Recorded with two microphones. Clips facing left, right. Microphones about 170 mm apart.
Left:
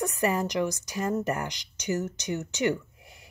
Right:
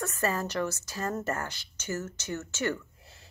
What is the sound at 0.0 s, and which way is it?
Speech, 15° left (ahead or behind).